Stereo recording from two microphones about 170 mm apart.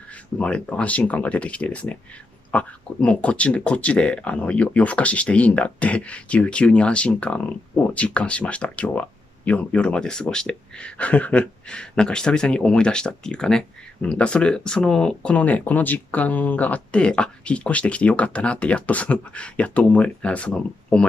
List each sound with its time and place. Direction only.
0.4 s speech: 5° left (ahead or behind)